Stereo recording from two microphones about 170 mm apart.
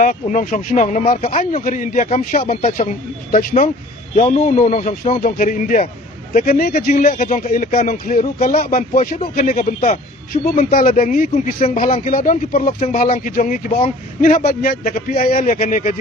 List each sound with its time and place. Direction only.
0.0 s speech: 50° left (ahead or behind)
3.3 s a man's voice: 45° left (ahead or behind)
10.8 s speech: 45° left (ahead or behind)
11.8 s speech: 35° left (ahead or behind)
12.1 s a man's voice: 55° left (ahead or behind)